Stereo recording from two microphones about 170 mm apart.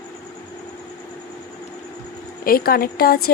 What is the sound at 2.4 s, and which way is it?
Speech, 60° left (ahead or behind).